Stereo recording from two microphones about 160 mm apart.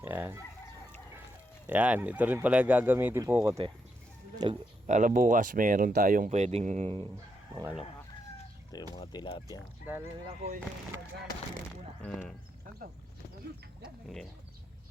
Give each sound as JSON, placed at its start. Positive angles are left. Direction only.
{"t": 0.0, "sound": "speech", "side_deg": -10}
{"t": 1.6, "sound": "speech", "side_deg": -10}
{"t": 4.4, "sound": "speech", "side_deg": -30}
{"t": 4.9, "sound": "speech", "side_deg": -50}
{"t": 9.0, "sound": "speech", "side_deg": 30}
{"t": 9.8, "sound": "speech", "side_deg": -15}
{"t": 12.0, "sound": "speech", "side_deg": 10}
{"t": 13.8, "sound": "speech", "side_deg": 0}